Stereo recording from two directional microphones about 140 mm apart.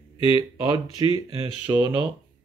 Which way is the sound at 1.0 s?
30° right (ahead or behind).